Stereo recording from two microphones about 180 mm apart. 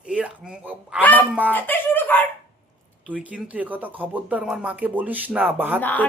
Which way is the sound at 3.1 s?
5° right (ahead or behind).